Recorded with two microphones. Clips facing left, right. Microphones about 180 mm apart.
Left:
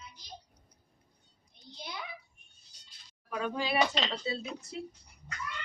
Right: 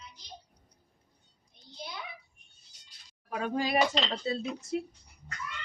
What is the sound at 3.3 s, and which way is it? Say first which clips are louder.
A woman's voice: right 2 dB; 45° right (ahead or behind).